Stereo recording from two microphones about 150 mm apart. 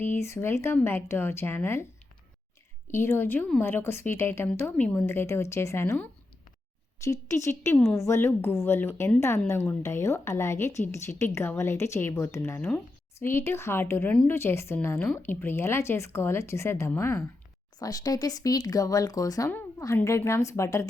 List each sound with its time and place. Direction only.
0.0 s a woman's voice: 15° left (ahead or behind)